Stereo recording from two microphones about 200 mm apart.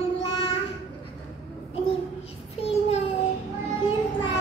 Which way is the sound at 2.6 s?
30° left (ahead or behind).